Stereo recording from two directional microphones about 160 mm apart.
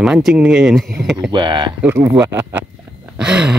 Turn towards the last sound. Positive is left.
turn(degrees=-5)  # may be behind; listen again after turning